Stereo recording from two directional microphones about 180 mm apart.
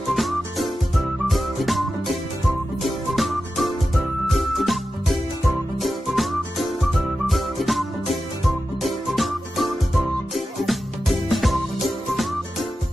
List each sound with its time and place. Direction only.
0.1 s music: centre (ahead or behind)